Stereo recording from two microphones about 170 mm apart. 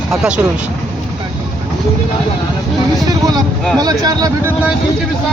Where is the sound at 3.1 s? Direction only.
25° right (ahead or behind).